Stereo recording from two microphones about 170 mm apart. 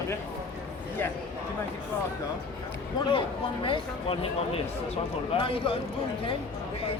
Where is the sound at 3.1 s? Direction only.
30° left (ahead or behind).